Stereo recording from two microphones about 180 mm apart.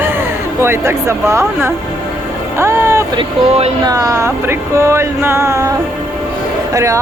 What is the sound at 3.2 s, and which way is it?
Speech, 35° right (ahead or behind).